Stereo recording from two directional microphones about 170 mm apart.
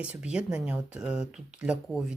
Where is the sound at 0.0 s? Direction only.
5° right (ahead or behind).